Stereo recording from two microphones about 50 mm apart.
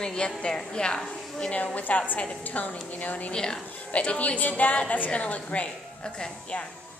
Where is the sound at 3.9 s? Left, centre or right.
Left.